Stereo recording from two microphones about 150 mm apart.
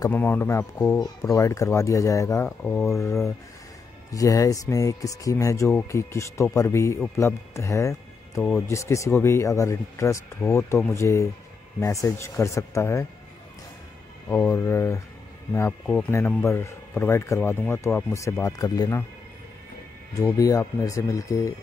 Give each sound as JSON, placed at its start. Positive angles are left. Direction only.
{"t": 0.1, "sound": "speech", "side_deg": 15}
{"t": 8.4, "sound": "speech", "side_deg": 5}
{"t": 8.6, "sound": "speech", "side_deg": 20}
{"t": 14.3, "sound": "speech", "side_deg": 15}
{"t": 20.3, "sound": "speech", "side_deg": 25}